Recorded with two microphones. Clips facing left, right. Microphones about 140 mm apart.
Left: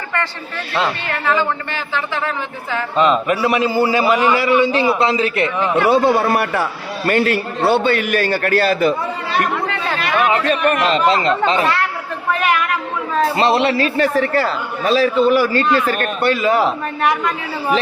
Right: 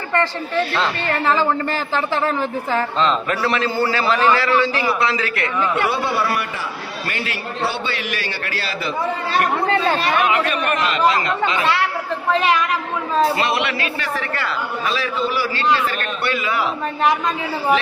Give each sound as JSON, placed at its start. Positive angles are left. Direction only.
{"t": 0.1, "sound": "speech", "side_deg": -30}
{"t": 3.0, "sound": "a man's voice", "side_deg": 10}
{"t": 5.7, "sound": "a man's voice", "side_deg": 35}
{"t": 6.1, "sound": "a man's voice", "side_deg": 50}
{"t": 7.1, "sound": "a man's voice", "side_deg": 50}
{"t": 9.6, "sound": "speech", "side_deg": -35}
{"t": 10.2, "sound": "a man's voice", "side_deg": 35}
{"t": 13.3, "sound": "a man's voice", "side_deg": 30}